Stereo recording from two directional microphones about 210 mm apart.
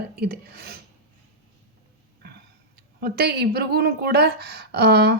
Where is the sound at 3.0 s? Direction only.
45° right (ahead or behind).